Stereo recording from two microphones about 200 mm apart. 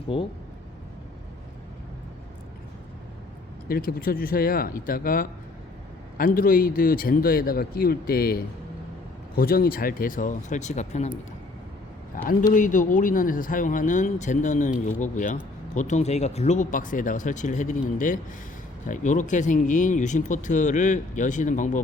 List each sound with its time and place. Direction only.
0.1 s speech: 25° left (ahead or behind)
3.7 s a man's voice: 45° left (ahead or behind)
12.1 s a man's voice: 40° left (ahead or behind)